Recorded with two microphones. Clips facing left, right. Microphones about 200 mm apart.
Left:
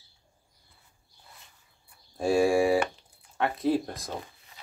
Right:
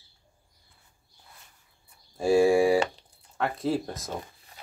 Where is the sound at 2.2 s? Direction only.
Centre (ahead or behind).